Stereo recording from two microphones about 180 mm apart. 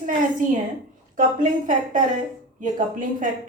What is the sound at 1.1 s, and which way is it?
Speech, 45° right (ahead or behind).